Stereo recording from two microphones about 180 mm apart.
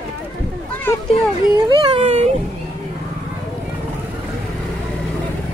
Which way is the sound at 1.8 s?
35° right (ahead or behind).